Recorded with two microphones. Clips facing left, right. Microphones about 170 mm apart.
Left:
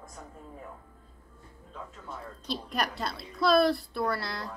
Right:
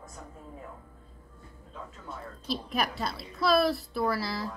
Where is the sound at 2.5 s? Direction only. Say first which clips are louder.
Right 1 dB; centre (ahead or behind).